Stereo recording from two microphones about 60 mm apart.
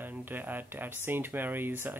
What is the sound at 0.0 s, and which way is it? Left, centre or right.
Speech, right.